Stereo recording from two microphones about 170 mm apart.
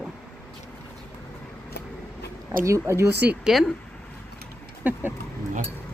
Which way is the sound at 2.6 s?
15° right (ahead or behind).